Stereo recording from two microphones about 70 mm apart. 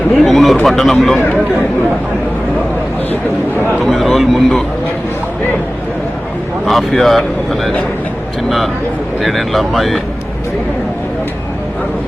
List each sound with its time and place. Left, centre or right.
0.3 s speech: centre
3.8 s speech: centre
6.7 s speech: centre